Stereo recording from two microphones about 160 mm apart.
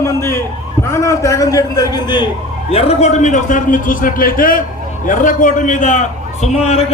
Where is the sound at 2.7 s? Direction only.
40° left (ahead or behind).